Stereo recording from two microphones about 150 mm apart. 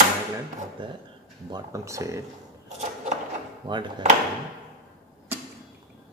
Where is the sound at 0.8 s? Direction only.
35° right (ahead or behind).